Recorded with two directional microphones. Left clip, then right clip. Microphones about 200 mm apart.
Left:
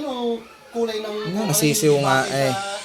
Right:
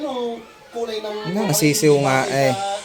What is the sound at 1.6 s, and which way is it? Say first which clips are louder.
Speech: right 2 dB; 15° right (ahead or behind).